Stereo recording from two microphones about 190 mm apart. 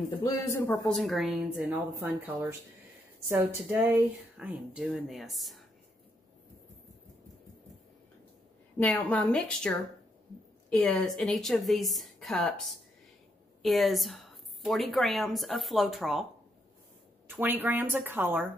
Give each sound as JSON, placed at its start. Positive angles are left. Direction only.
{"t": 0.2, "sound": "speech", "side_deg": 15}
{"t": 0.8, "sound": "a woman's voice", "side_deg": 0}
{"t": 8.7, "sound": "a woman's voice", "side_deg": 10}
{"t": 17.4, "sound": "speech", "side_deg": -10}